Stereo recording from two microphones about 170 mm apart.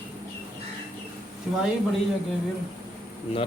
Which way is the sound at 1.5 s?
5° right (ahead or behind).